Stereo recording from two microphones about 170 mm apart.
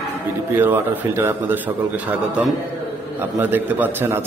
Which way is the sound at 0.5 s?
15° right (ahead or behind).